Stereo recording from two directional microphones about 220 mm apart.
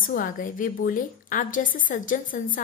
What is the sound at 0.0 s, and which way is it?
A woman's voice, 40° left (ahead or behind).